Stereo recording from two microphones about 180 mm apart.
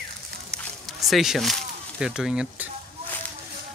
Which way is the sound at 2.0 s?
5° right (ahead or behind).